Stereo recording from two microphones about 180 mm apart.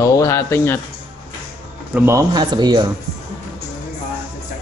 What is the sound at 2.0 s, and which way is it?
Speech, 15° right (ahead or behind).